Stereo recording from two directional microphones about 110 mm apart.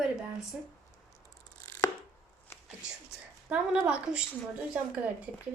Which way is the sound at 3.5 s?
10° right (ahead or behind).